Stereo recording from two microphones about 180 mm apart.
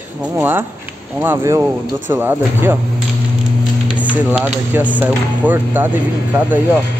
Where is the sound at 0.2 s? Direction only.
10° right (ahead or behind).